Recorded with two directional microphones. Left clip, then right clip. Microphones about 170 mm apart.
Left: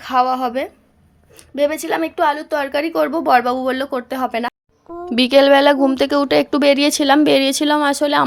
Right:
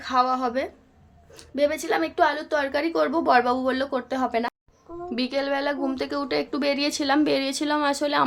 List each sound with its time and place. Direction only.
0.0 s a woman's voice: 25° left (ahead or behind)
5.0 s speech: 55° left (ahead or behind)